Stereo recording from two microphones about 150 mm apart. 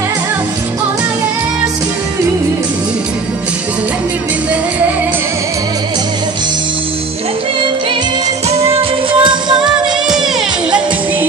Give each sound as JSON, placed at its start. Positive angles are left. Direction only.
{"t": 9.2, "sound": "music", "side_deg": -30}